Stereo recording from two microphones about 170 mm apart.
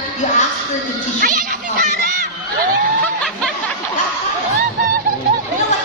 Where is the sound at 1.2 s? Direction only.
55° right (ahead or behind).